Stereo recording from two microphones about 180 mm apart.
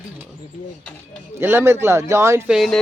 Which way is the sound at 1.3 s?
15° right (ahead or behind).